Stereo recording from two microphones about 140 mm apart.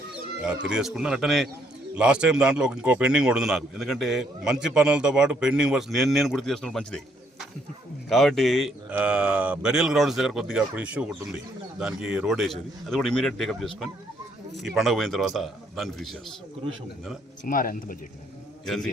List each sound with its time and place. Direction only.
0.4 s a man's voice: 5° right (ahead or behind)
17.4 s speech: 80° left
18.6 s a man's voice: centre (ahead or behind)